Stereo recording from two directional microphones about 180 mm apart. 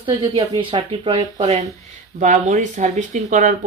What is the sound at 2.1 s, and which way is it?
Speech, 45° right (ahead or behind).